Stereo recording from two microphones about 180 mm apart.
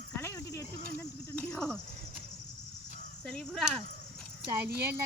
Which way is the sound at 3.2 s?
5° left (ahead or behind).